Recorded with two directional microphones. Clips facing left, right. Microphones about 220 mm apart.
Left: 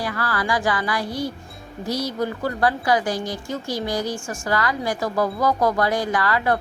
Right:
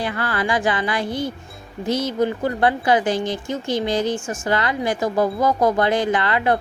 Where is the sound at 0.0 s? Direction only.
25° right (ahead or behind).